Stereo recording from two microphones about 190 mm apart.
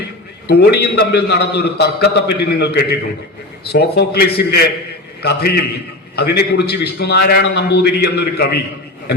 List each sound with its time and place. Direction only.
0.4 s a man's voice: 60° left (ahead or behind)